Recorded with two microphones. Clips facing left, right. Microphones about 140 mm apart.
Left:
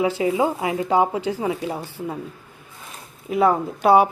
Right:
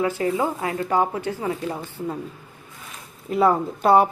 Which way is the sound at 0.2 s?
15° left (ahead or behind).